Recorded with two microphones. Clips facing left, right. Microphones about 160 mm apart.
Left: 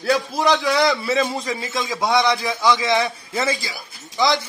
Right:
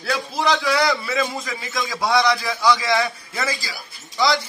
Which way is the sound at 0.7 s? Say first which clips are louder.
Left 2 dB; 30° left (ahead or behind).